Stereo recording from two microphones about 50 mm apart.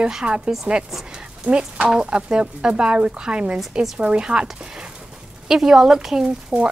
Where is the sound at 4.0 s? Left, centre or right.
Centre.